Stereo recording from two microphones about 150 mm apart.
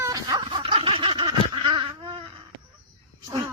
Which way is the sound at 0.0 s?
25° right (ahead or behind).